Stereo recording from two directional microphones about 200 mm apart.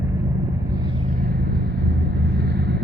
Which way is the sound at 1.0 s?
50° right (ahead or behind).